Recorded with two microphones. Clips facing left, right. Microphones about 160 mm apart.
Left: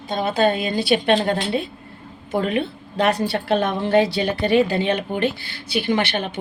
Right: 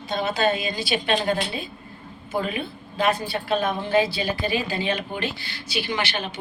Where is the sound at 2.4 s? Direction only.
70° left (ahead or behind).